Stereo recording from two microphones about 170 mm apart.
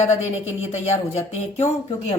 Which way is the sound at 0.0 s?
40° left (ahead or behind).